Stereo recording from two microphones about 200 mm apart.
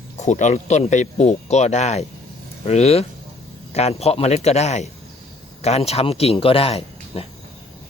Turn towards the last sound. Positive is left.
turn(degrees=30)  # may be behind; listen again after turning